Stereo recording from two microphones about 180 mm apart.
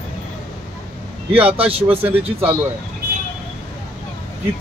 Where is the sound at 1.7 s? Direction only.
30° right (ahead or behind).